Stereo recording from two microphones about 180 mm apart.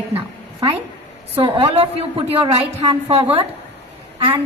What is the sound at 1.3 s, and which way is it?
A woman's voice, 30° right (ahead or behind).